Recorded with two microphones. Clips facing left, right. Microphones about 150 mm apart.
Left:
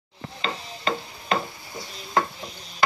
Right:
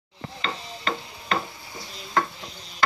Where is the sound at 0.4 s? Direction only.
20° left (ahead or behind).